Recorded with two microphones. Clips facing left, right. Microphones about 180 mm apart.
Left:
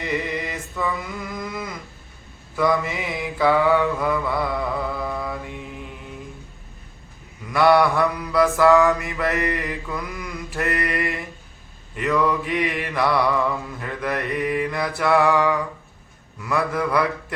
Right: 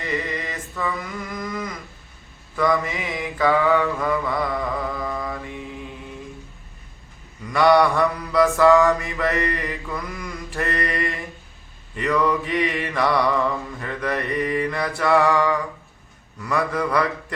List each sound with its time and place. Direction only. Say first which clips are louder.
0.0 s mantra: left 1 dB; 10° left (ahead or behind)
1.5 s a sound: right 2 dB; 10° left (ahead or behind)
2.6 s mantra: even; 5° left (ahead or behind)
7.4 s mantra: even; 5° left (ahead or behind)